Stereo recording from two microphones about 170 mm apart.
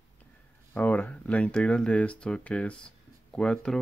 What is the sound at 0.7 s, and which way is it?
Speech, 10° left (ahead or behind).